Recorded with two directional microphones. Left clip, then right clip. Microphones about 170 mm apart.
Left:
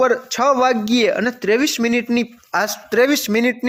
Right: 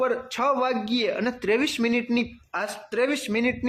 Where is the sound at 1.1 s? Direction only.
25° left (ahead or behind).